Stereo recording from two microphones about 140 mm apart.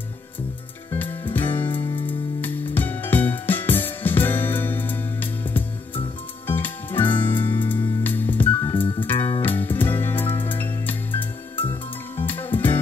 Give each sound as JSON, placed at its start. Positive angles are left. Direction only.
{"t": 0.9, "sound": "music", "side_deg": 15}
{"t": 1.8, "sound": "music", "side_deg": 35}
{"t": 2.4, "sound": "music", "side_deg": 15}